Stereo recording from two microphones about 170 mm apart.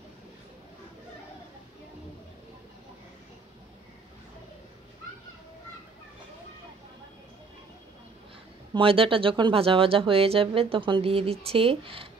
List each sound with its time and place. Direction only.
8.7 s speech: 30° right (ahead or behind)